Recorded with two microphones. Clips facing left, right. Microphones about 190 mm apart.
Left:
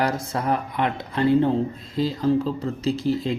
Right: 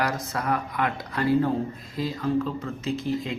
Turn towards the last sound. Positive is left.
turn(degrees=35)  # may be behind; listen again after turning